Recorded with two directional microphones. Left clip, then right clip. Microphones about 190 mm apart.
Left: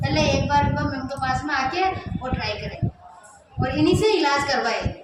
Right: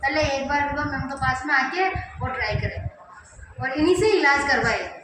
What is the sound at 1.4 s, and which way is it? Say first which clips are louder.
Speech: right 2 dB; 20° left (ahead or behind).